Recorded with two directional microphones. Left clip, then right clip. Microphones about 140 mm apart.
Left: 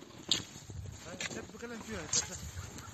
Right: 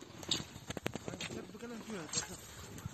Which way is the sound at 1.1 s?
45° left (ahead or behind).